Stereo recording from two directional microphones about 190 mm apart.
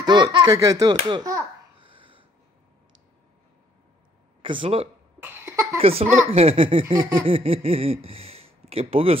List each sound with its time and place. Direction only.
0.0 s a child's voice: 25° right (ahead or behind)
2.0 s a sound: 25° right (ahead or behind)
4.4 s speech: 25° right (ahead or behind)
5.2 s cough: 15° right (ahead or behind)
5.8 s speech: 30° right (ahead or behind)
6.3 s laughter: 30° right (ahead or behind)
7.0 s a sound: 15° right (ahead or behind)
7.2 s speech: 30° right (ahead or behind)